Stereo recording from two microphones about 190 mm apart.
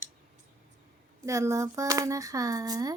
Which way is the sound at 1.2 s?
15° right (ahead or behind).